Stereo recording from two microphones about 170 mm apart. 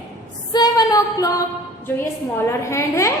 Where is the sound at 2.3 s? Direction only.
15° left (ahead or behind).